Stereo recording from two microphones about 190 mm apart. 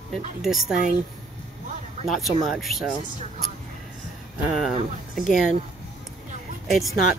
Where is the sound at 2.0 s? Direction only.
Centre (ahead or behind).